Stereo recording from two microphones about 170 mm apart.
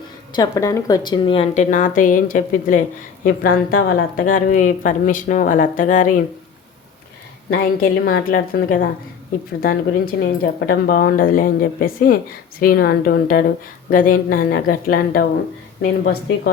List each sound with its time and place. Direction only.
0.3 s speech: 20° left (ahead or behind)
1.7 s a woman's voice: 50° left (ahead or behind)
7.5 s speech: 60° left (ahead or behind)